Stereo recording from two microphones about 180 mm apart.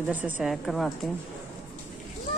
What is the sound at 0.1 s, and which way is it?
Speech, 5° right (ahead or behind).